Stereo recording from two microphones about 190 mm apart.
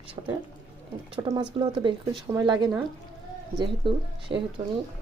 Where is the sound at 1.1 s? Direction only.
25° right (ahead or behind).